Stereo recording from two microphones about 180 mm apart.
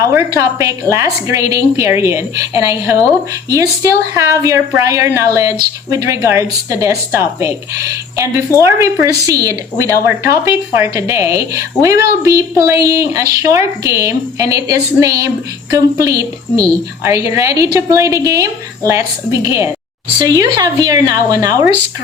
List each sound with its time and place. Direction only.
0.0 s speech: 15° right (ahead or behind)
4.1 s speech: 15° right (ahead or behind)
8.6 s speech: 15° right (ahead or behind)